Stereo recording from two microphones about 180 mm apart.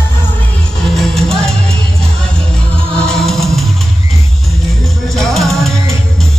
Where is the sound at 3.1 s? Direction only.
Centre (ahead or behind).